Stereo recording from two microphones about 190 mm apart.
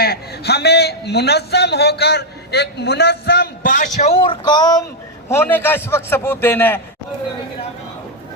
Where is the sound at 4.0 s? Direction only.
30° left (ahead or behind); by 6.8 s 10° left (ahead or behind).